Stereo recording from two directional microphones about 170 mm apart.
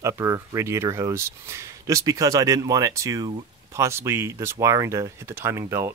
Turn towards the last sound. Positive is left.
turn(degrees=-15)  # may be behind; listen again after turning